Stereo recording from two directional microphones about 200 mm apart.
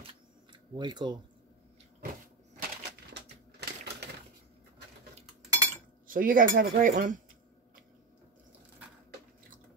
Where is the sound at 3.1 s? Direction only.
55° right (ahead or behind).